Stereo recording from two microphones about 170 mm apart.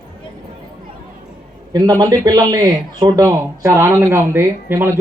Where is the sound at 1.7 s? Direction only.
20° right (ahead or behind).